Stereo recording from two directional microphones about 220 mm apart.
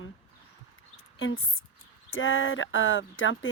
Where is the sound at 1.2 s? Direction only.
65° left (ahead or behind).